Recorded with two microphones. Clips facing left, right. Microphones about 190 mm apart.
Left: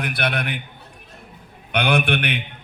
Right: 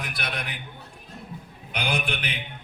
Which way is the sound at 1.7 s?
65° left (ahead or behind).